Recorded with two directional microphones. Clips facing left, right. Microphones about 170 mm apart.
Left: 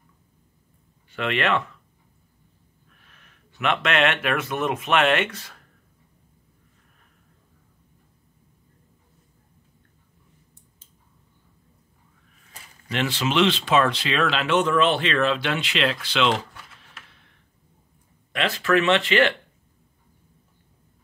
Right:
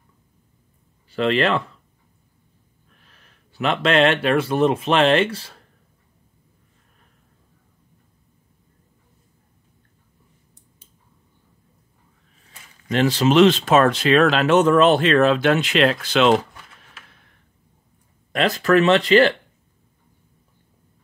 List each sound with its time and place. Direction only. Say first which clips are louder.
1.1 s speech: right 5 dB; 35° right (ahead or behind)
3.1 s speech: left 1 dB; 35° right (ahead or behind)
12.9 s speech: right 8 dB; 40° right (ahead or behind)
18.3 s speech: right 5 dB; 40° right (ahead or behind)